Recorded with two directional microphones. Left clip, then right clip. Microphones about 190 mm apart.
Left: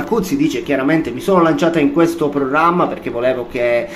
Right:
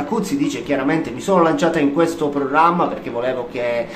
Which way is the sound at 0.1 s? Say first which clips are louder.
Left 7 dB; 10° left (ahead or behind).